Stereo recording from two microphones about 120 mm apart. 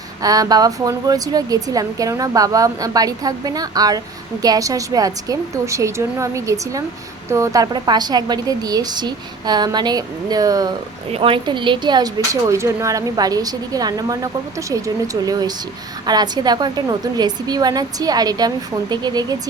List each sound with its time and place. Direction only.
0.2 s a woman's voice: 30° right (ahead or behind)
11.1 s speech: 45° right (ahead or behind)